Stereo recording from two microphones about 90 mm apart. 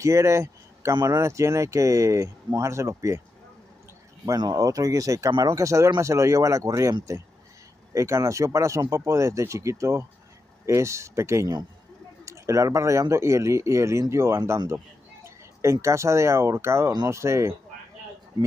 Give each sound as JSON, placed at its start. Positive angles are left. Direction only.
{"t": 0.0, "sound": "speech", "side_deg": -35}
{"t": 4.4, "sound": "speech", "side_deg": -50}